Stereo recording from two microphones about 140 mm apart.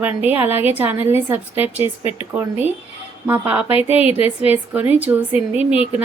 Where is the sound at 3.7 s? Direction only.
45° left (ahead or behind).